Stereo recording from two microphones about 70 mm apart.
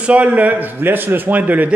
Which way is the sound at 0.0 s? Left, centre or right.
Centre.